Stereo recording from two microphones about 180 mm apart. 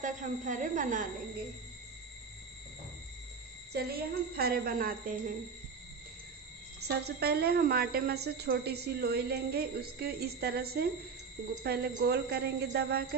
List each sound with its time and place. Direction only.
0.0 s a woman's voice: 45° right (ahead or behind)
3.7 s a woman's voice: 60° right (ahead or behind)
6.8 s a woman's voice: 60° right (ahead or behind)